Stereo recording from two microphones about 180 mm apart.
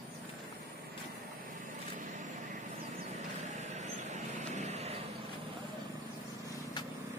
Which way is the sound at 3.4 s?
40° right (ahead or behind).